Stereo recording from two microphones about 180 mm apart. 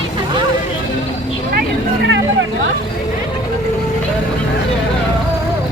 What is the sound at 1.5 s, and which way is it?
Vehicle, 75° right (ahead or behind).